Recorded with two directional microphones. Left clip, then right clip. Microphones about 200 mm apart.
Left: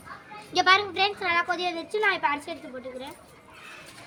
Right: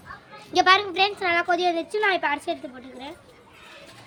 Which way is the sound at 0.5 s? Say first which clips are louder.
Right 3 dB; 55° right (ahead or behind).